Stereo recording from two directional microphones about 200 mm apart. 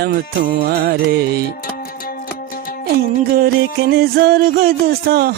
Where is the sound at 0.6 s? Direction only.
50° right (ahead or behind).